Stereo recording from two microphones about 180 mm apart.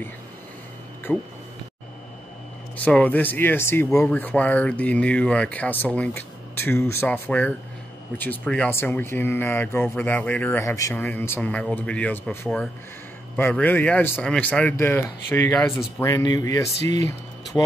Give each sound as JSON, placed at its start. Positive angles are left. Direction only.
{"t": 1.1, "sound": "speech", "side_deg": 0}
{"t": 2.8, "sound": "speech", "side_deg": 10}